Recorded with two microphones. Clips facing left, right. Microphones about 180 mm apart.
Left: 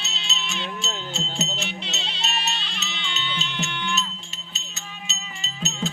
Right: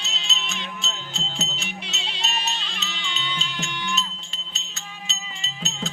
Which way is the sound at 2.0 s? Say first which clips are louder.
Even; 15° right (ahead or behind).